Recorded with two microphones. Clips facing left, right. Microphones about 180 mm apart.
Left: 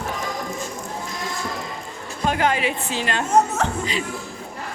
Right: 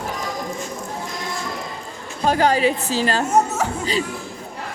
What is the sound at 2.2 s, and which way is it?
A woman's voice, 35° right (ahead or behind).